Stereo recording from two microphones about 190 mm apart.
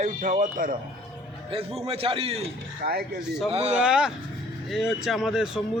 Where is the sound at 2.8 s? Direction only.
55° right (ahead or behind).